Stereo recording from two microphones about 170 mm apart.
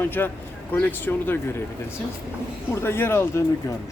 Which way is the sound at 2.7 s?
15° left (ahead or behind).